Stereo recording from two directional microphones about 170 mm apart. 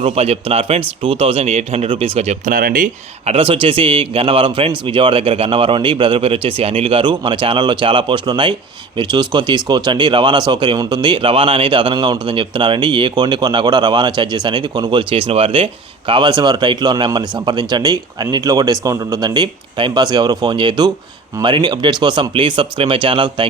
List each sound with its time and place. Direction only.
0.0 s speech: 35° right (ahead or behind); by 3.3 s 50° right (ahead or behind)
3.3 s speech: 35° right (ahead or behind)